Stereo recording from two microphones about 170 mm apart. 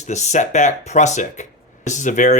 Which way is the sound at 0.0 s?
45° left (ahead or behind).